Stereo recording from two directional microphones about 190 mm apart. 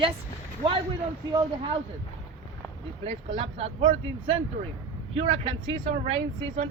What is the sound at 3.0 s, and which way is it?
Speech, 30° right (ahead or behind).